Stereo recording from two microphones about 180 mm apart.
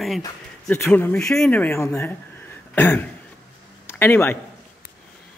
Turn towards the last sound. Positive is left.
turn(degrees=15)  # may be behind; listen again after turning